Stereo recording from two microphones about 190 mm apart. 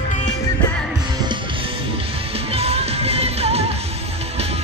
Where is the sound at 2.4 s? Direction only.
30° right (ahead or behind).